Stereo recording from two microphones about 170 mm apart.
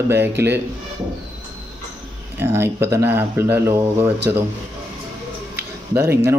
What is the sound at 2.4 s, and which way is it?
Speech, 15° right (ahead or behind).